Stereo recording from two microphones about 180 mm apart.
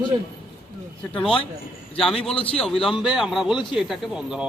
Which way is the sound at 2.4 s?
30° left (ahead or behind).